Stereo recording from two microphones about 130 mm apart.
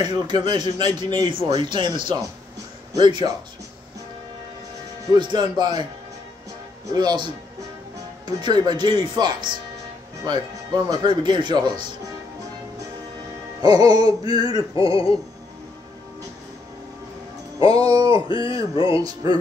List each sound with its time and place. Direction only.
0.0 s a man's voice: 35° right (ahead or behind)
5.0 s a man's voice: 35° right (ahead or behind)
6.9 s a man's voice: 30° right (ahead or behind)
8.4 s a man's voice: 35° right (ahead or behind)
13.6 s a man's voice: 30° right (ahead or behind)
14.8 s speech: 45° left (ahead or behind)
17.6 s music: 30° right (ahead or behind)
18.0 s speech: 40° left (ahead or behind)
18.5 s music: 25° right (ahead or behind)